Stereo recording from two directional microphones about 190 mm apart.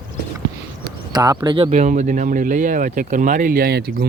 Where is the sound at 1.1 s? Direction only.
20° right (ahead or behind); by 4.0 s 55° right (ahead or behind).